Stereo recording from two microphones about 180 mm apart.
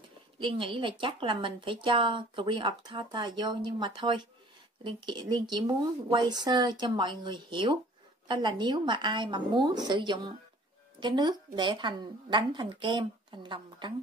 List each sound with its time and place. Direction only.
0.4 s speech: 30° right (ahead or behind)